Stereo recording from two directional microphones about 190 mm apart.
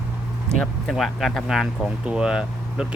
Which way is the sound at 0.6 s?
Centre (ahead or behind).